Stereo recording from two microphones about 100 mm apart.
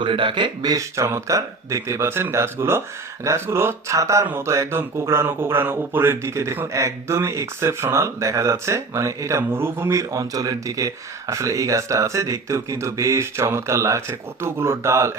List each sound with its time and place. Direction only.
0.0 s speech: 55° right (ahead or behind); by 15.2 s 30° right (ahead or behind)